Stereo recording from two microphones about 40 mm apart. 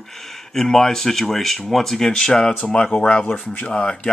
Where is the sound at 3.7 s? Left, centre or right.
Left.